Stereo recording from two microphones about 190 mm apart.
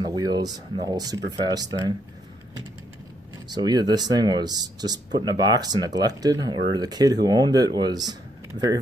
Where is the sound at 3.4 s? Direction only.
20° right (ahead or behind).